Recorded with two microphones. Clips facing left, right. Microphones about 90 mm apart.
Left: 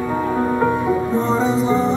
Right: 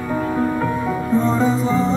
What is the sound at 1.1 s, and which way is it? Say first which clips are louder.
Music: right 1 dB; 20° left (ahead or behind).